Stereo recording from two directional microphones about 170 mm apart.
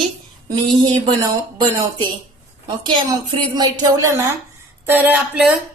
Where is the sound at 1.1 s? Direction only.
25° right (ahead or behind).